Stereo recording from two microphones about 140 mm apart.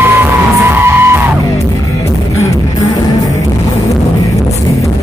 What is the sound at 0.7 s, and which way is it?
Music, 15° right (ahead or behind).